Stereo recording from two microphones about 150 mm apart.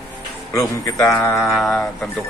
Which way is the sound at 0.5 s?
20° left (ahead or behind).